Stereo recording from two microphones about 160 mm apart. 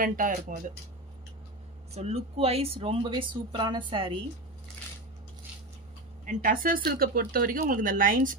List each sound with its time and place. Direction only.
0.0 s speech: 55° right (ahead or behind)
2.0 s speech: 40° right (ahead or behind)
6.2 s speech: 60° right (ahead or behind)